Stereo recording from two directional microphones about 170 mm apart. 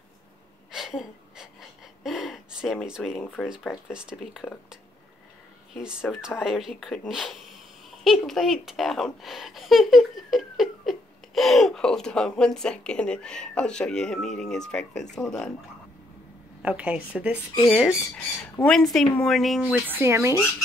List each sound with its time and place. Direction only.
0.7 s gasp: 5° right (ahead or behind)
3.2 s speech: 10° left (ahead or behind)
3.4 s speech: 5° right (ahead or behind)
5.8 s speech: 5° right (ahead or behind)
16.6 s a woman's voice: 10° right (ahead or behind)
18.1 s speech: 10° left (ahead or behind)
19.9 s a woman's voice: 15° right (ahead or behind)